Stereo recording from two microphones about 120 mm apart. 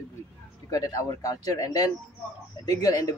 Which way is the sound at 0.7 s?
30° left (ahead or behind).